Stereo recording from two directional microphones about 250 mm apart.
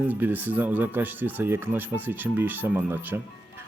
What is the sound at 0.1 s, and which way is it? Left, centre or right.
Speech, centre.